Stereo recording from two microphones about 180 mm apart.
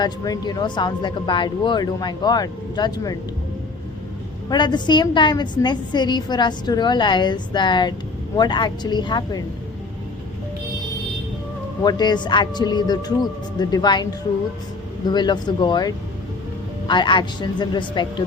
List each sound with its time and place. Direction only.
0.0 s a woman's voice: 25° left (ahead or behind)
4.4 s a woman's voice: 25° left (ahead or behind)
11.8 s a woman's voice: 25° left (ahead or behind)
15.1 s a woman's voice: 25° left (ahead or behind)